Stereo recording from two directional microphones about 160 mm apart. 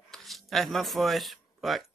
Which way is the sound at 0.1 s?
Centre (ahead or behind).